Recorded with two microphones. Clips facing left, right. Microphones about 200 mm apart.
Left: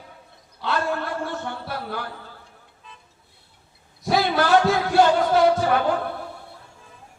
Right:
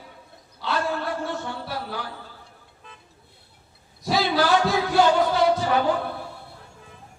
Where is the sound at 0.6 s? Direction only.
55° left (ahead or behind).